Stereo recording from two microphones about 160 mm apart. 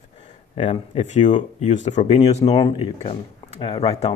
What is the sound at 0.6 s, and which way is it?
Speech, 45° left (ahead or behind).